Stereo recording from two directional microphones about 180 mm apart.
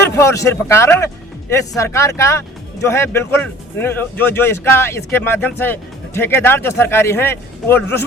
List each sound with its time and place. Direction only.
0.0 s speech: 15° left (ahead or behind)